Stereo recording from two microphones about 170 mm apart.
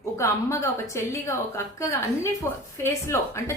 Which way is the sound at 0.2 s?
15° left (ahead or behind).